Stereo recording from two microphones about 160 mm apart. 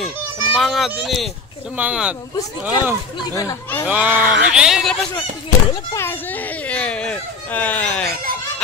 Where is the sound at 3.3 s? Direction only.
20° left (ahead or behind).